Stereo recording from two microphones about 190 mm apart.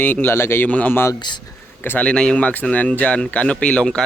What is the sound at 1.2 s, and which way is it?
Speech, 25° left (ahead or behind).